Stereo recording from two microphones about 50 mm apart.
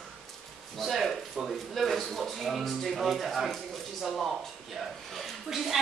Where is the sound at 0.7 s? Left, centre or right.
Centre.